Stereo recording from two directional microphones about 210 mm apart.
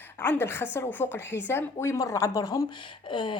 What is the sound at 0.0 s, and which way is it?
A woman's voice, 10° left (ahead or behind).